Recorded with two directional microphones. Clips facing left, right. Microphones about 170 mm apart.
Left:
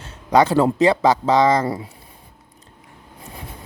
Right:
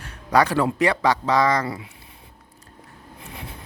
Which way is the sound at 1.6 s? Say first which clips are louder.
Left 6 dB; 40° left (ahead or behind).